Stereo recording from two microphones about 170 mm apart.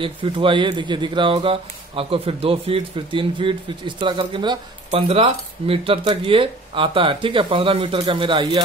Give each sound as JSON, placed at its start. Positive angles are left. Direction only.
{"t": 0.0, "sound": "speech", "side_deg": -30}